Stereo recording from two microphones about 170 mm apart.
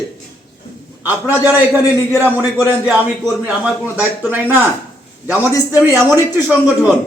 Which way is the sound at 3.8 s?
10° right (ahead or behind).